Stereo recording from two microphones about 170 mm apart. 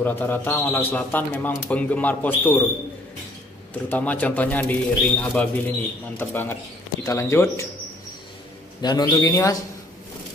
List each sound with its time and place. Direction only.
0.0 s speech: 10° left (ahead or behind)
3.9 s speech: 10° left (ahead or behind)
8.8 s speech: 25° left (ahead or behind)